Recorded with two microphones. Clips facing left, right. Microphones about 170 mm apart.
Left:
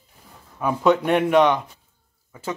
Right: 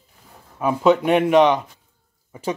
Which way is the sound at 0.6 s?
10° right (ahead or behind).